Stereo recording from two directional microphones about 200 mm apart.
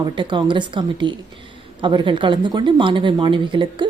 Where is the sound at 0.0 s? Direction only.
25° right (ahead or behind).